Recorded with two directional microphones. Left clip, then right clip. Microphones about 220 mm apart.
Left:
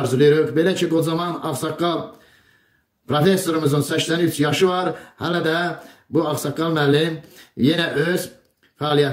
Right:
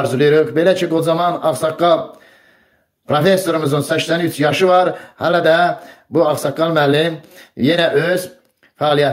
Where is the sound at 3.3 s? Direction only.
15° left (ahead or behind).